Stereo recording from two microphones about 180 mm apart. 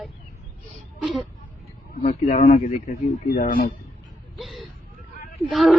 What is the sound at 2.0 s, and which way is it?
Speech, 40° left (ahead or behind).